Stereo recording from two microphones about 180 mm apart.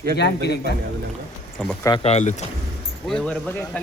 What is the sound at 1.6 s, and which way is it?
Speech, centre (ahead or behind).